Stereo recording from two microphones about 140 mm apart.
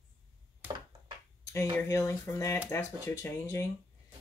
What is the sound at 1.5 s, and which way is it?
Speech, 20° left (ahead or behind).